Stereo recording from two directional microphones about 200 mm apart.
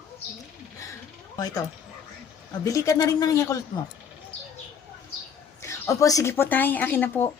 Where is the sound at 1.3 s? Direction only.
20° left (ahead or behind).